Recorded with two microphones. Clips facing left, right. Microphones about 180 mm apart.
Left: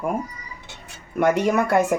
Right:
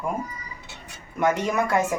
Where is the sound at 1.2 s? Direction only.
65° left (ahead or behind).